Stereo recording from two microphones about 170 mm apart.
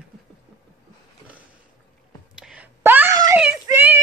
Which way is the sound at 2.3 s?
5° right (ahead or behind).